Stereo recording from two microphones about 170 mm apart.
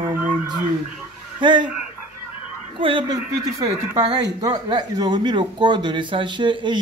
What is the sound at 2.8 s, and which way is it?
Speech, 30° right (ahead or behind).